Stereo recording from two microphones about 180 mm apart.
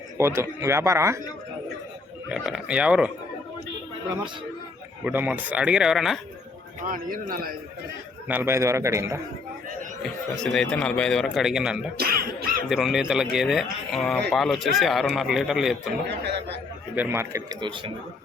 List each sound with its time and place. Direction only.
0.2 s a man's voice: 15° right (ahead or behind)
2.3 s a man's voice: 5° right (ahead or behind)
5.0 s speech: 10° right (ahead or behind)
6.8 s a man's voice: 50° right (ahead or behind)
8.3 s a man's voice: 10° right (ahead or behind)
10.0 s speech: centre (ahead or behind)
11.9 s speech: 55° right (ahead or behind)
12.6 s speech: centre (ahead or behind)
16.0 s a man's voice: 70° right (ahead or behind)
16.9 s a man's voice: 10° right (ahead or behind); by 17.9 s 25° right (ahead or behind)